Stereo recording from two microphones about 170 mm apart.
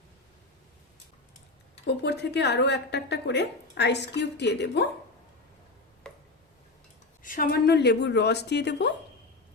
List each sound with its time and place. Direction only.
1.9 s a woman's voice: 80° left
6.0 s tick-tock: 5° left (ahead or behind)
7.2 s a woman's voice: 55° left (ahead or behind); by 8.9 s 80° left